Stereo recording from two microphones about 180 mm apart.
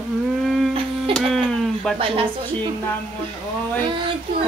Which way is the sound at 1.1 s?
5° left (ahead or behind).